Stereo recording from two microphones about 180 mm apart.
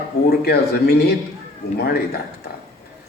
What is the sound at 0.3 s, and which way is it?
Speech, 60° left (ahead or behind).